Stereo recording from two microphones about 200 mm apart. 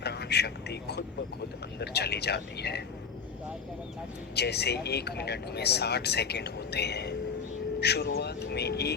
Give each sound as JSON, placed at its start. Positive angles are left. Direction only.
{"t": 0.0, "sound": "a sound", "side_deg": 55}
{"t": 1.8, "sound": "speech", "side_deg": 55}
{"t": 4.4, "sound": "speech", "side_deg": 55}